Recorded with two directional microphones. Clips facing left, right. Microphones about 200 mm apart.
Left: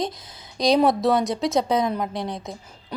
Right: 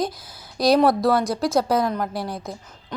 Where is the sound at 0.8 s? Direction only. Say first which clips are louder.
Right 1 dB; 20° left (ahead or behind).